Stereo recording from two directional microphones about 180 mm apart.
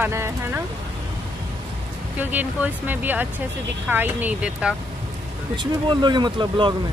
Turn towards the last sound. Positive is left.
turn(degrees=-25)  # may be behind; listen again after turning